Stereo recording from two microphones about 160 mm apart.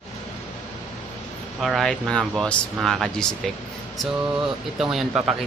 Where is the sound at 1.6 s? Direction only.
Centre (ahead or behind).